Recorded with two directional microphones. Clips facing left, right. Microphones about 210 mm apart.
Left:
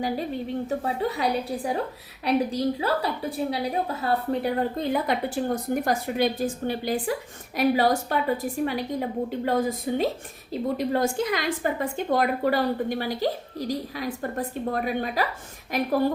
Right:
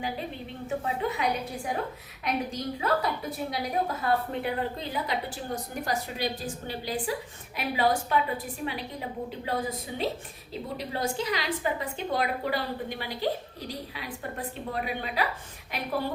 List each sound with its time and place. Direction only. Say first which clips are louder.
0.7 s a woman's voice: right 1 dB; 35° left (ahead or behind); by 6.9 s 55° left (ahead or behind)
7.5 s a woman's voice: left 5 dB; 40° left (ahead or behind)